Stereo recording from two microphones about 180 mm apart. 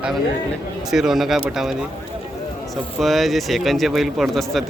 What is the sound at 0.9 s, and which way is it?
Speech, centre (ahead or behind).